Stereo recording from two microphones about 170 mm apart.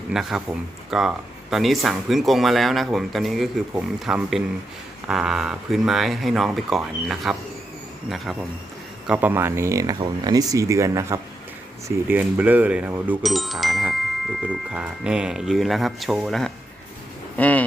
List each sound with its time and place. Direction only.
0.1 s speech: 5° right (ahead or behind)